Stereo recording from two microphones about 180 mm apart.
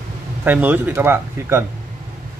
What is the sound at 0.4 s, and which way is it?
Speech, 10° right (ahead or behind).